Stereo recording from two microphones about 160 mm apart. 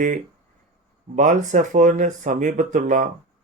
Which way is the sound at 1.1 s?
50° right (ahead or behind).